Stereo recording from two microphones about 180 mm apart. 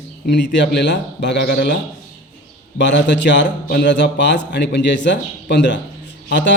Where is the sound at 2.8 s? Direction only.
80° left.